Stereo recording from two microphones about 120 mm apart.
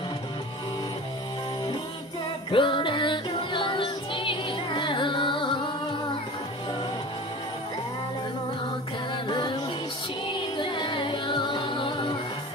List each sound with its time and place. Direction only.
2.5 s music: 45° left (ahead or behind)
9.3 s music: 40° left (ahead or behind)
10.6 s music: 40° left (ahead or behind)